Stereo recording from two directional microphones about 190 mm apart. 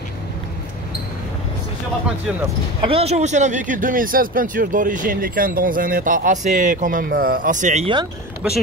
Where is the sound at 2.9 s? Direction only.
30° right (ahead or behind).